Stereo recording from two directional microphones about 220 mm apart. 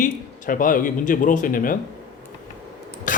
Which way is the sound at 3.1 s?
35° left (ahead or behind).